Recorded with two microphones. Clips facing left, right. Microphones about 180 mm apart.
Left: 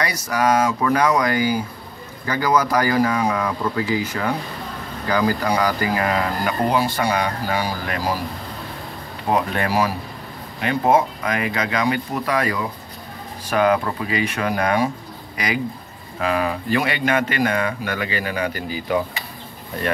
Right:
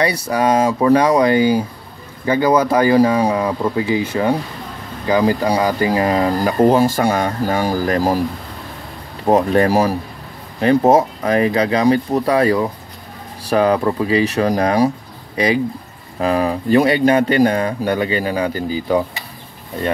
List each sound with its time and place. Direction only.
0.3 s speech: 30° right (ahead or behind); by 8.2 s 45° right (ahead or behind)
9.3 s speech: 40° right (ahead or behind)